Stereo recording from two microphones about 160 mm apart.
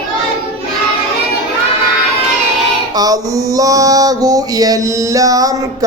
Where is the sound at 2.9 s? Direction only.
25° right (ahead or behind).